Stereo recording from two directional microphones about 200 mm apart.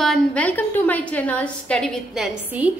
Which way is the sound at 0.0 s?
5° left (ahead or behind).